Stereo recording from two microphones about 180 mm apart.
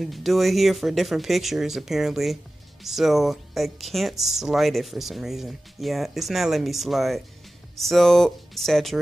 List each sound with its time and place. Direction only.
0.0 s speech: centre (ahead or behind)